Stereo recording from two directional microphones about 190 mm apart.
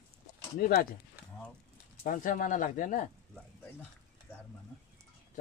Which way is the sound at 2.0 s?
45° left (ahead or behind).